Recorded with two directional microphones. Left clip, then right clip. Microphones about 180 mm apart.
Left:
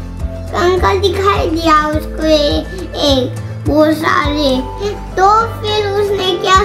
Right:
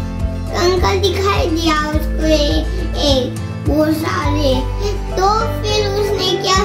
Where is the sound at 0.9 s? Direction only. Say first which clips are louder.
Left 3 dB; 15° left (ahead or behind).